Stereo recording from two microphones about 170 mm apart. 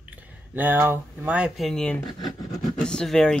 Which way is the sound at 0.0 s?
10° right (ahead or behind).